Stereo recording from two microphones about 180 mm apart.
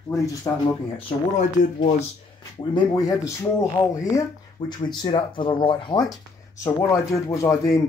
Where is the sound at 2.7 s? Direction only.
20° left (ahead or behind).